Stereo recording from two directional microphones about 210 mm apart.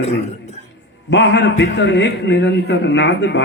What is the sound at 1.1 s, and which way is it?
A man's voice, 55° left (ahead or behind).